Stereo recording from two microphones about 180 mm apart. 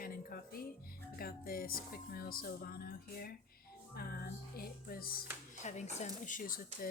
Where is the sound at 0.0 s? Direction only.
55° left (ahead or behind).